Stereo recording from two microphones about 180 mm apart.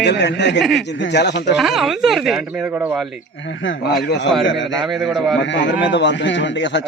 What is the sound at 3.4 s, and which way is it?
A man's voice, 90° left.